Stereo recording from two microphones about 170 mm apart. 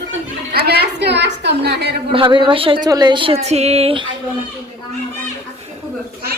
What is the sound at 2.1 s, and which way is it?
Speech, 30° right (ahead or behind).